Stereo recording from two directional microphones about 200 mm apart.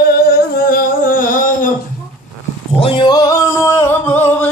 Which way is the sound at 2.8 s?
20° left (ahead or behind).